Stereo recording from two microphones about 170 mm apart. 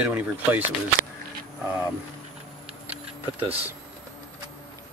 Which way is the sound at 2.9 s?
10° right (ahead or behind).